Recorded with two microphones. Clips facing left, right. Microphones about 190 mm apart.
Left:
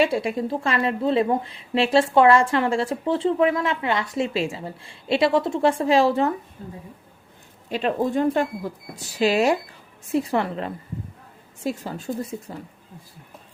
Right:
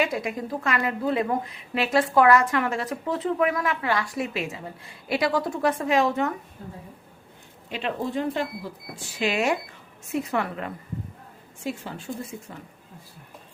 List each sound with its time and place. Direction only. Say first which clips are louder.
0.0 s a woman's voice: left 5 dB; 30° left (ahead or behind)
7.7 s speech: left 6 dB; 40° left (ahead or behind)